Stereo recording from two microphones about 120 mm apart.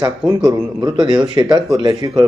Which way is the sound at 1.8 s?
45° right (ahead or behind).